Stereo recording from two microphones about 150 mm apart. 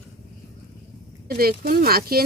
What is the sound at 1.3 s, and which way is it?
Speech, 85° right.